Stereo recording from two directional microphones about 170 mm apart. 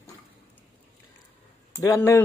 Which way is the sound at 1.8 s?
15° left (ahead or behind).